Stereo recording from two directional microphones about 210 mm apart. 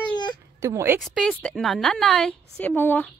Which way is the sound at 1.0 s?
Centre (ahead or behind).